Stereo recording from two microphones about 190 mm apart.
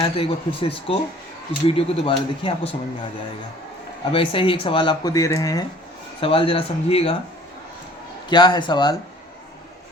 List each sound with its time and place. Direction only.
0.0 s speech: 30° left (ahead or behind)
4.1 s speech: 30° left (ahead or behind)
8.3 s speech: 25° left (ahead or behind)